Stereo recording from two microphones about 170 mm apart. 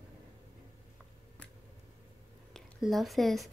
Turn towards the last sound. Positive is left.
turn(degrees=0)  # may be behind; listen again after turning